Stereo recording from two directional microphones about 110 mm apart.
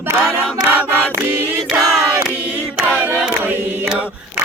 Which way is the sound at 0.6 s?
15° right (ahead or behind).